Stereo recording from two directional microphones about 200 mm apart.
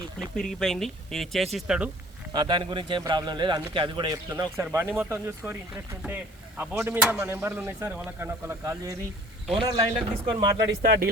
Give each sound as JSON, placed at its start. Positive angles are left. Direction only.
{"t": 0.2, "sound": "speech", "side_deg": 5}
{"t": 2.3, "sound": "a man's voice", "side_deg": -20}
{"t": 10.6, "sound": "speech", "side_deg": -50}